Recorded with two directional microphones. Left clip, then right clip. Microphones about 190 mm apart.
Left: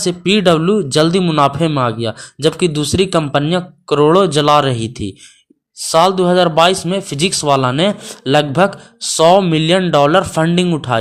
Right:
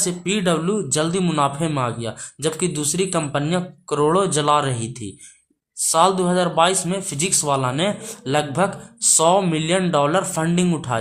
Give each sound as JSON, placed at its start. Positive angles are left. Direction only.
{"t": 0.0, "sound": "speech", "side_deg": 30}